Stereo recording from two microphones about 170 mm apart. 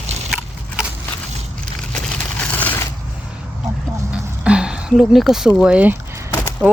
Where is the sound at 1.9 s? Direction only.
10° left (ahead or behind).